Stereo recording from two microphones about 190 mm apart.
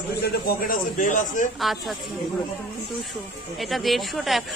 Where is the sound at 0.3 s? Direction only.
50° left (ahead or behind).